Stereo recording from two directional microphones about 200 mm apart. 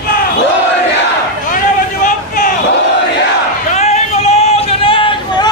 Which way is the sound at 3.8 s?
30° left (ahead or behind).